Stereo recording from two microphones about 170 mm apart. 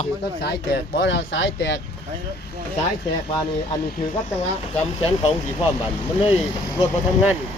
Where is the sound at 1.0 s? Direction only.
90° left.